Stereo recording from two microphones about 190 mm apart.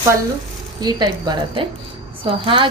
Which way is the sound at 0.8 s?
20° right (ahead or behind).